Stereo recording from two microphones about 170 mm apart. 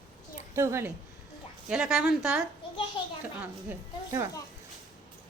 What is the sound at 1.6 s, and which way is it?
Speech, 5° right (ahead or behind).